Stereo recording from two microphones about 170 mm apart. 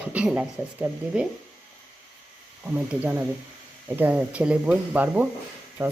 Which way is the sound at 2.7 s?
10° right (ahead or behind).